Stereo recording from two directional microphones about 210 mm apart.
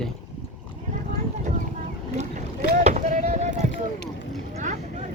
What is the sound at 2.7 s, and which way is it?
Boat, 35° right (ahead or behind).